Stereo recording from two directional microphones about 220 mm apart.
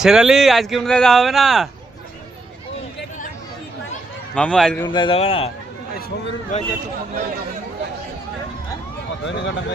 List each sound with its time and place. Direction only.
0.0 s speech: centre (ahead or behind)
4.4 s speech: 5° left (ahead or behind)
4.9 s a man's voice: 20° left (ahead or behind)
6.5 s speech: 35° left (ahead or behind)
9.2 s speech: 50° left (ahead or behind)